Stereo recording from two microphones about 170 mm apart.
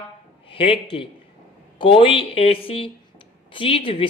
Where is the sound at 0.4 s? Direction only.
35° left (ahead or behind).